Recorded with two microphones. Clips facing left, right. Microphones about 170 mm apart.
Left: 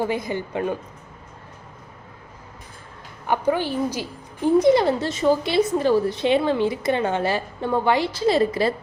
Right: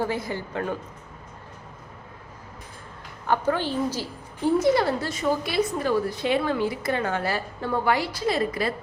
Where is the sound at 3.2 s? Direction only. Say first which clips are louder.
Left 2 dB; 15° left (ahead or behind).